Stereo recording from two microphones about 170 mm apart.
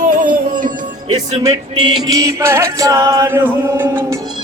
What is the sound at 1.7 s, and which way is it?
Music, 30° right (ahead or behind).